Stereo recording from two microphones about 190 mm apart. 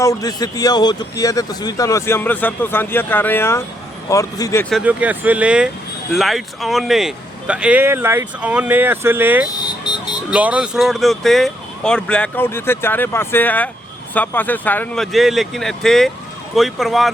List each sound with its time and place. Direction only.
0.0 s speech: 15° left (ahead or behind)
4.7 s speech: 5° right (ahead or behind)
9.8 s emergency vehicle: 25° left (ahead or behind)
10.3 s speech: 5° right (ahead or behind)